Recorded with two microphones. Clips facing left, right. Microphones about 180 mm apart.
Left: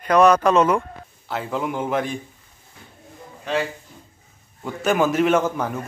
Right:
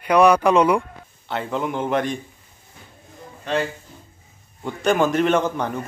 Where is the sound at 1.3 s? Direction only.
5° left (ahead or behind).